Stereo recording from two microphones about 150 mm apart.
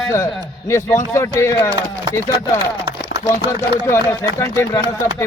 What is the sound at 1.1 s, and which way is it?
Speech, 20° left (ahead or behind).